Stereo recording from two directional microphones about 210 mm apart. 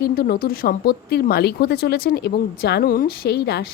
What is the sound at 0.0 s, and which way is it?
Speech, 50° left (ahead or behind).